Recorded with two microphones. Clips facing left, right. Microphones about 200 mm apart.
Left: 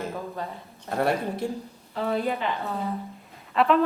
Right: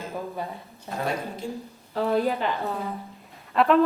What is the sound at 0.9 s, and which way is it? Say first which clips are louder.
Speech: left 4 dB; 60° left (ahead or behind).